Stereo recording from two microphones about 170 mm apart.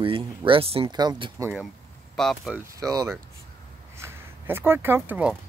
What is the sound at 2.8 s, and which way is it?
Speech, 20° right (ahead or behind).